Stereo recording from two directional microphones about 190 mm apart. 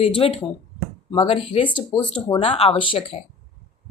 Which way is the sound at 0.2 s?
30° left (ahead or behind).